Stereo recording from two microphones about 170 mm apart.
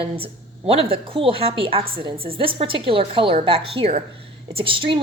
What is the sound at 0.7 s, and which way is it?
A woman's voice, 35° right (ahead or behind).